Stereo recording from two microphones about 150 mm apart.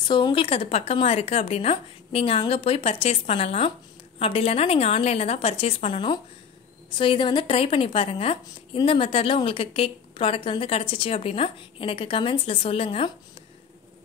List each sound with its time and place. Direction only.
0.0 s a woman's voice: 30° left (ahead or behind)